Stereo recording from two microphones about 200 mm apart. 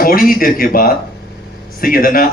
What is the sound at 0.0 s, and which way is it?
A man's voice, 45° left (ahead or behind).